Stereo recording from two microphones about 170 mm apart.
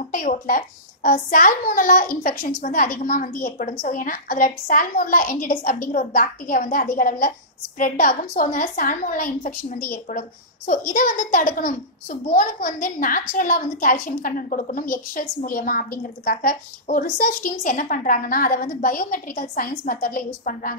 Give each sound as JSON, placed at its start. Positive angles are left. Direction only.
{"t": 0.1, "sound": "a child's voice", "side_deg": 55}